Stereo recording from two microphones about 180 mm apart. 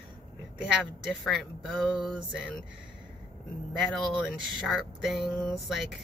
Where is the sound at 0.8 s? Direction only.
Centre (ahead or behind).